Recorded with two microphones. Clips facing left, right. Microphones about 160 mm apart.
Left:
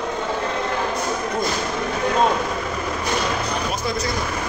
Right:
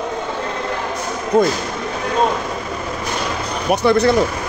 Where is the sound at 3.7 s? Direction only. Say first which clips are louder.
Right 11 dB; 70° right (ahead or behind).